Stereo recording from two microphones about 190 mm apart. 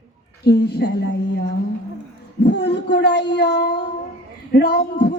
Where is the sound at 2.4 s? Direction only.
65° left (ahead or behind).